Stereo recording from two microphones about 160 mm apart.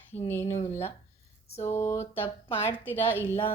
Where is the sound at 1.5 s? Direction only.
40° left (ahead or behind).